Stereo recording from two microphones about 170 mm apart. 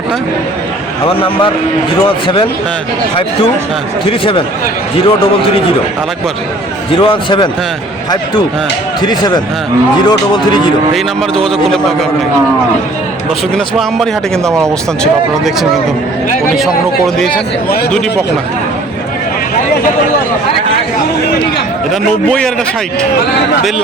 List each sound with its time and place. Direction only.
1.0 s a man's voice: 30° left (ahead or behind)
4.2 s a man's voice: 30° left (ahead or behind)
6.9 s a man's voice: 30° left (ahead or behind)
9.0 s a man's voice: 25° left (ahead or behind)
11.4 s speech: centre (ahead or behind)
14.6 s speech: centre (ahead or behind)
17.2 s speech: 5° left (ahead or behind)
22.3 s speech: 5° left (ahead or behind)